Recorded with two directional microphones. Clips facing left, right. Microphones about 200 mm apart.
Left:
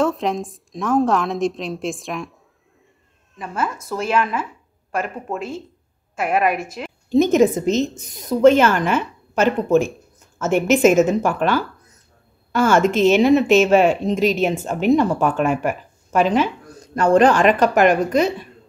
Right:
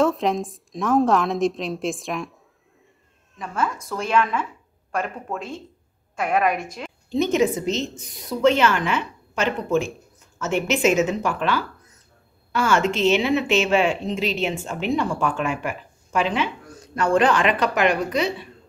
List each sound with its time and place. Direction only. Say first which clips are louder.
0.0 s a woman's voice: even; centre (ahead or behind)
3.3 s a woman's voice: left 1 dB; 5° left (ahead or behind)
7.1 s a woman's voice: left 6 dB; 45° left (ahead or behind)